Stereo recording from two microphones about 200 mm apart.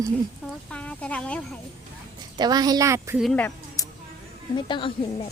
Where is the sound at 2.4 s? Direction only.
20° right (ahead or behind).